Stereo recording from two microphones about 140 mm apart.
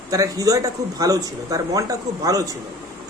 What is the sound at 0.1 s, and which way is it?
Speech, 25° right (ahead or behind).